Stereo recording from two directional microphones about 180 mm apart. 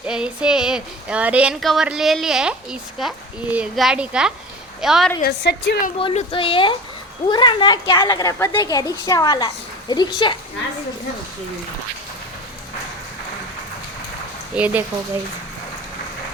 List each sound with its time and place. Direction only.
0.0 s a woman's voice: 5° right (ahead or behind)
5.2 s a woman's voice: 65° left (ahead or behind)
6.0 s a woman's voice: 30° left (ahead or behind)
14.5 s speech: 10° right (ahead or behind)